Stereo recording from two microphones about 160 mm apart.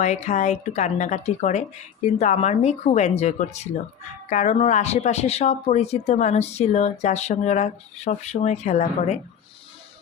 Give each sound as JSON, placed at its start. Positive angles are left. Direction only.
{"t": 0.0, "sound": "speech", "side_deg": 45}